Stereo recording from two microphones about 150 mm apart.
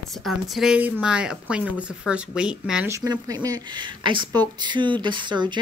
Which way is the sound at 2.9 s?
20° right (ahead or behind).